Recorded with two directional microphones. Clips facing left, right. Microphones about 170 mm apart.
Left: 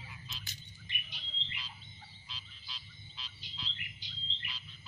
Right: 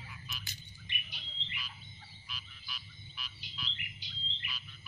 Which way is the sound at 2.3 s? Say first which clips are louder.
Right 4 dB; 25° left (ahead or behind).